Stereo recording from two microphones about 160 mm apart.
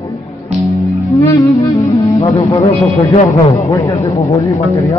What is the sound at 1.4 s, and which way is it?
Music, 20° left (ahead or behind).